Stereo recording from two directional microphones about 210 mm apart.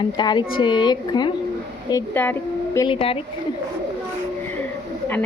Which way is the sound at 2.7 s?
25° left (ahead or behind).